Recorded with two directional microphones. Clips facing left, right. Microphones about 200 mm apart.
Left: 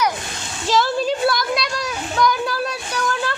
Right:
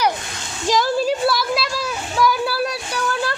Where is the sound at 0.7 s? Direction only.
10° right (ahead or behind).